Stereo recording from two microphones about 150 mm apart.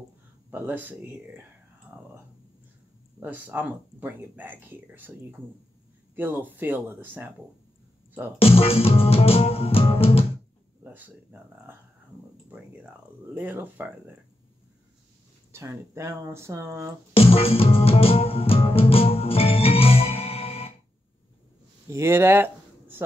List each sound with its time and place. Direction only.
0.5 s speech: 10° right (ahead or behind)
3.2 s speech: 10° right (ahead or behind)
6.1 s speech: 15° right (ahead or behind)
8.4 s music: 40° left (ahead or behind)
10.8 s speech: 10° right (ahead or behind)
12.4 s speech: 10° right (ahead or behind)
15.5 s speech: 15° right (ahead or behind)
17.1 s music: 40° left (ahead or behind)
21.8 s speech: 20° right (ahead or behind)